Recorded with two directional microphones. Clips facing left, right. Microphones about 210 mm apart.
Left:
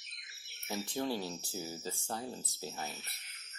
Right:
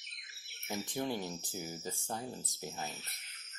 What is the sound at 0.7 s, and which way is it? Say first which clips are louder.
Speech: left 1 dB; 20° right (ahead or behind).